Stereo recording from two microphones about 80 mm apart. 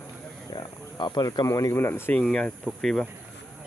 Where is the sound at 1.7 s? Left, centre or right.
Left.